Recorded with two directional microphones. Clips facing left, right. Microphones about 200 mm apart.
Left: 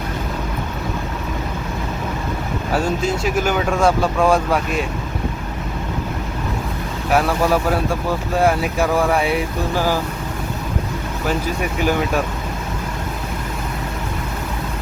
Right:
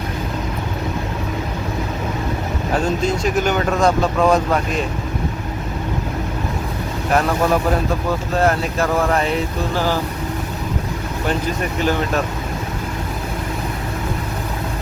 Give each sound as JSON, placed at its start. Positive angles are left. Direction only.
{"t": 2.7, "sound": "speech", "side_deg": 10}
{"t": 7.1, "sound": "speech", "side_deg": 5}
{"t": 11.8, "sound": "speech", "side_deg": 10}